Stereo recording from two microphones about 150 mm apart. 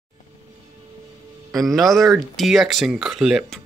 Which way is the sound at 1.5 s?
Centre (ahead or behind).